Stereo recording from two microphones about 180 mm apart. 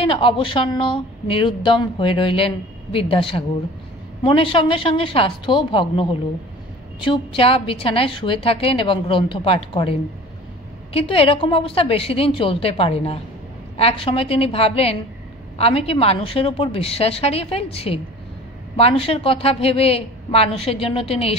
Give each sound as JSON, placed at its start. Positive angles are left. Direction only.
{"t": 0.0, "sound": "speech", "side_deg": 30}
{"t": 7.1, "sound": "a woman's voice", "side_deg": 30}